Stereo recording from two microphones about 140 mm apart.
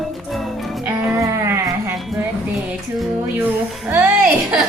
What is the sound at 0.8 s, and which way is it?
Music, 15° right (ahead or behind).